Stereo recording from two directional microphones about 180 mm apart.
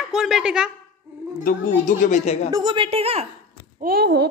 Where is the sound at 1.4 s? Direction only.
45° left (ahead or behind).